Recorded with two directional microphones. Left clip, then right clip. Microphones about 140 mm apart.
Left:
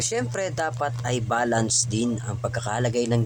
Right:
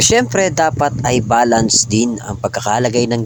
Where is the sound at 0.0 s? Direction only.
70° right (ahead or behind).